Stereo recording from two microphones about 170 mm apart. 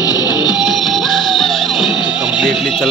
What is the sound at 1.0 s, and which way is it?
Music, 25° left (ahead or behind).